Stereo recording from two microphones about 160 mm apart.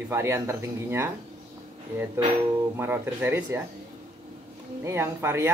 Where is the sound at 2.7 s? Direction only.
15° right (ahead or behind).